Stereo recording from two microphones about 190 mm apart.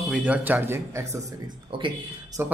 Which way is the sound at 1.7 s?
25° right (ahead or behind).